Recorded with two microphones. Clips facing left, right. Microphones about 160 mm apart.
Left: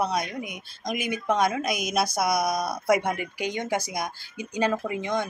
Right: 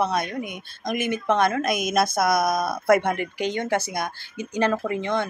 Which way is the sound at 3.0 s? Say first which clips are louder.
Right 3 dB; 10° left (ahead or behind).